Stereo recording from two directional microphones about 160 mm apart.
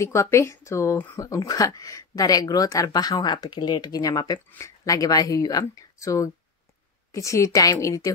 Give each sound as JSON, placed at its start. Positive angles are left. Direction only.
{"t": 0.0, "sound": "speech", "side_deg": 20}